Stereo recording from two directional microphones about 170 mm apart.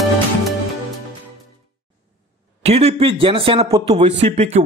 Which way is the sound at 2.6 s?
40° right (ahead or behind).